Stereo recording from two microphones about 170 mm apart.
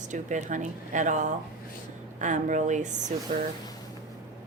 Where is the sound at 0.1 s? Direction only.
45° right (ahead or behind).